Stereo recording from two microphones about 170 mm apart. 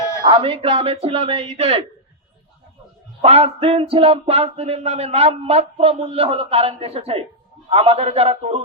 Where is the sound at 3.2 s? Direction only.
35° right (ahead or behind).